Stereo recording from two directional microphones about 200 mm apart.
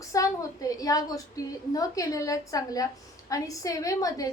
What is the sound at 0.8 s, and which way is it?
A woman's voice, 20° left (ahead or behind).